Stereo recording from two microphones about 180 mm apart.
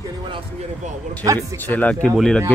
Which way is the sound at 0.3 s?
35° right (ahead or behind).